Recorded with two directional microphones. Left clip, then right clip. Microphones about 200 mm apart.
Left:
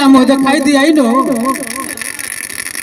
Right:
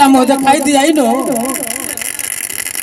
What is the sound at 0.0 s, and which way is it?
Speech, 30° left (ahead or behind).